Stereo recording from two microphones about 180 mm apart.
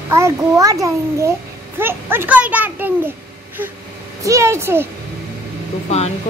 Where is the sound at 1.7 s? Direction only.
10° right (ahead or behind).